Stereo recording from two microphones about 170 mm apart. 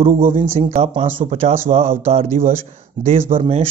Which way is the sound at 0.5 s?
35° right (ahead or behind).